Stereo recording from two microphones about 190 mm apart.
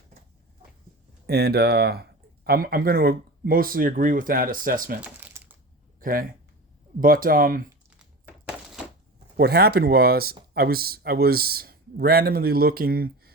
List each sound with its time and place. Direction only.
1.3 s speech: 55° right (ahead or behind)
4.9 s crumpling: 5° right (ahead or behind)
6.0 s speech: 50° right (ahead or behind)
8.4 s a sound: 5° right (ahead or behind)
9.4 s speech: 55° right (ahead or behind)